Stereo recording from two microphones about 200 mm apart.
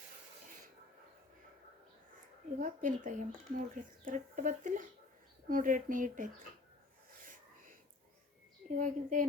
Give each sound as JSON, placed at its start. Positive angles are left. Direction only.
{"t": 2.6, "sound": "speech", "side_deg": -40}
{"t": 7.2, "sound": "a sound", "side_deg": -45}
{"t": 8.8, "sound": "speech", "side_deg": -40}